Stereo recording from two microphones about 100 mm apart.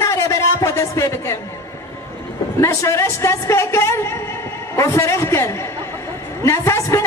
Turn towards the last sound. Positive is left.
turn(degrees=30)  # may be behind; listen again after turning